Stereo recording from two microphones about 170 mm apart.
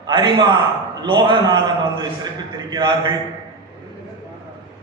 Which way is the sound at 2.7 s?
25° right (ahead or behind).